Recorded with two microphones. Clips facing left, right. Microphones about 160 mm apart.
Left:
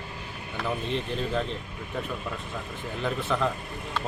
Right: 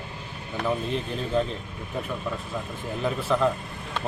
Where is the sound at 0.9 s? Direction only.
5° right (ahead or behind).